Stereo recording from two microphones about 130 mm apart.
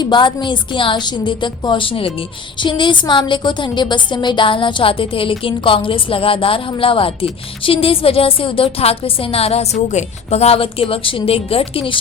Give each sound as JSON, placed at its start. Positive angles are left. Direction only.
{"t": 0.0, "sound": "a woman's voice", "side_deg": 35}